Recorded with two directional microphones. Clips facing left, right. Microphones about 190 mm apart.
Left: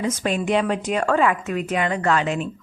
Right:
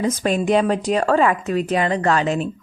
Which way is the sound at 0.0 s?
35° right (ahead or behind).